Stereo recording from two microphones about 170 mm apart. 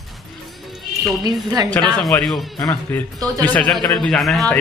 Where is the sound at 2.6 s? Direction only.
15° left (ahead or behind).